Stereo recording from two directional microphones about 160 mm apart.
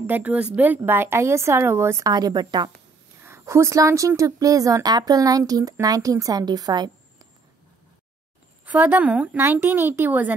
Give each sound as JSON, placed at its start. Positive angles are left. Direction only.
{"t": 0.0, "sound": "speech", "side_deg": -10}
{"t": 8.6, "sound": "speech", "side_deg": -10}